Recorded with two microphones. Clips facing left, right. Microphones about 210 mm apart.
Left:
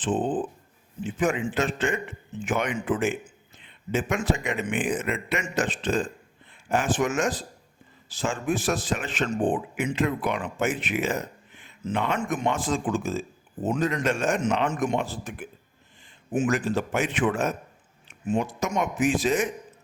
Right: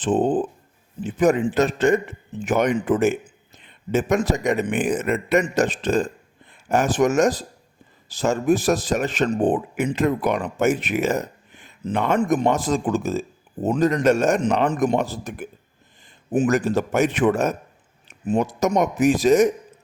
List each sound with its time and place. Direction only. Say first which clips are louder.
0.0 s a man's voice: right 6 dB; 40° right (ahead or behind)